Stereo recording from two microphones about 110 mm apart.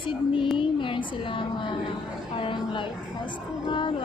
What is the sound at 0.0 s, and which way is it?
A woman's voice, 45° left (ahead or behind).